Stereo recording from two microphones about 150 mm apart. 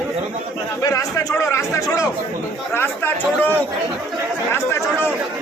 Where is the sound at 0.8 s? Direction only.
20° left (ahead or behind).